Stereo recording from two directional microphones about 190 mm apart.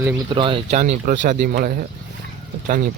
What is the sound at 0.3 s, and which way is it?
Speech, 25° right (ahead or behind).